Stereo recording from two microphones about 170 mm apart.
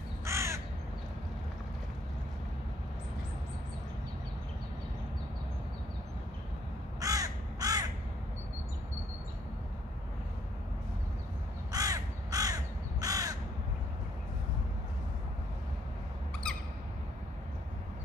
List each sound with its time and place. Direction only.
0.2 s crow: 15° right (ahead or behind)
7.0 s crow: 20° right (ahead or behind)
11.7 s crow: 20° right (ahead or behind)